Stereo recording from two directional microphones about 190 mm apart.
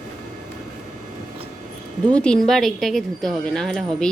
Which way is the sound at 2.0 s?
5° left (ahead or behind).